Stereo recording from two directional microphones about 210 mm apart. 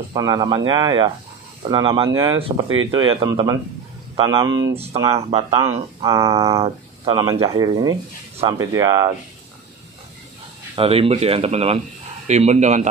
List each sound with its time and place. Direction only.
0.1 s speech: 20° right (ahead or behind)
5.1 s speech: 25° right (ahead or behind)
5.6 s speech: 15° right (ahead or behind)
10.8 s speech: 25° right (ahead or behind)